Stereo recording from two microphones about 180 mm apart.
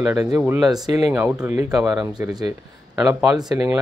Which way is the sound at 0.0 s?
15° right (ahead or behind).